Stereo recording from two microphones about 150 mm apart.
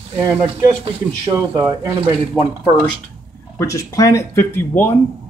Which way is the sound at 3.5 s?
20° left (ahead or behind).